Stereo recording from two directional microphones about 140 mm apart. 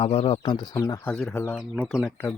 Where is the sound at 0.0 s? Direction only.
40° left (ahead or behind).